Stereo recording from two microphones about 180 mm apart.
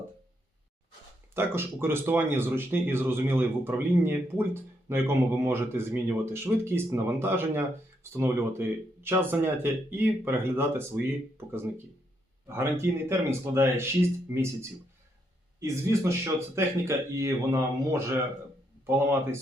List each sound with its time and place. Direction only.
1.3 s speech: 15° right (ahead or behind)
15.6 s speech: 15° right (ahead or behind)